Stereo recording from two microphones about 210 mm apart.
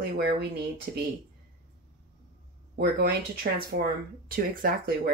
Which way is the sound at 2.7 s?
50° right (ahead or behind).